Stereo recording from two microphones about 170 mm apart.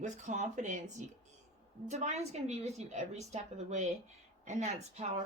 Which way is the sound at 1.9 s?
40° right (ahead or behind).